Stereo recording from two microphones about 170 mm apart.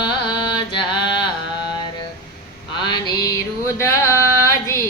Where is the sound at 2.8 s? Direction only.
25° left (ahead or behind).